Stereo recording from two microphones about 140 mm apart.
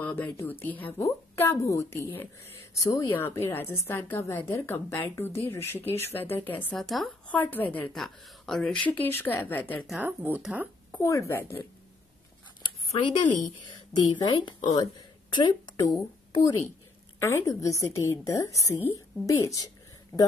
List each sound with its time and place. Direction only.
0.0 s a woman's voice: 15° left (ahead or behind)
6.8 s a woman's voice: centre (ahead or behind)
9.8 s speech: 10° right (ahead or behind)
10.9 s a woman's voice: 20° left (ahead or behind)
12.6 s a sound: 35° left (ahead or behind)
14.1 s a woman's voice: 30° left (ahead or behind)
17.2 s a woman's voice: 20° left (ahead or behind)
20.1 s speech: centre (ahead or behind)